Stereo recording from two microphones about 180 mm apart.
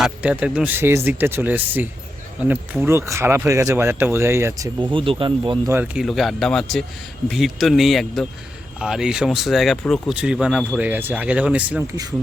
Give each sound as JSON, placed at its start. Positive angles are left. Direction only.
{"t": 0.0, "sound": "speech", "side_deg": -5}
{"t": 5.7, "sound": "speech", "side_deg": -5}